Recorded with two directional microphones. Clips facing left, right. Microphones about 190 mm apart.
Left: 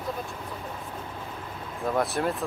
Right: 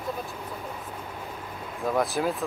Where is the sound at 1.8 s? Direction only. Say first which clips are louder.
Right 1 dB; centre (ahead or behind).